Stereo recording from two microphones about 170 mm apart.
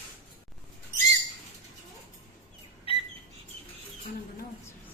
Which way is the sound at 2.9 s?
35° left (ahead or behind).